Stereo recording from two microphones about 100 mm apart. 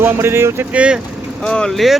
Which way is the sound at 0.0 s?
25° right (ahead or behind).